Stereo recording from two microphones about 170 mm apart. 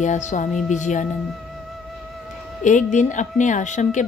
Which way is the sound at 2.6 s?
45° left (ahead or behind).